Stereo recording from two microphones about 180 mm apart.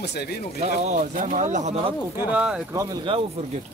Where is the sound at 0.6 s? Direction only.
40° right (ahead or behind).